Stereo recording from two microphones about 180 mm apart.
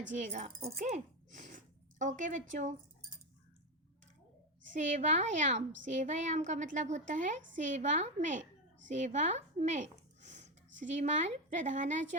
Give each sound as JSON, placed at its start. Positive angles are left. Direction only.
{"t": 0.2, "sound": "a woman's voice", "side_deg": -40}
{"t": 4.7, "sound": "a woman's voice", "side_deg": -45}
{"t": 10.2, "sound": "a sound", "side_deg": -40}
{"t": 10.8, "sound": "a woman's voice", "side_deg": -40}